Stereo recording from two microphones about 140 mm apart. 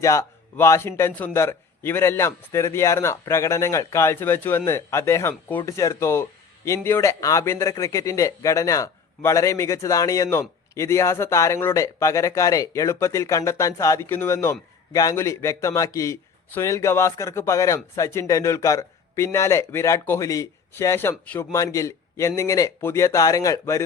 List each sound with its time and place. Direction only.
0.0 s a man's voice: 20° left (ahead or behind)